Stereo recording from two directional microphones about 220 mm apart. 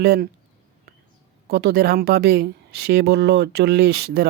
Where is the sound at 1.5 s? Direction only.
45° right (ahead or behind).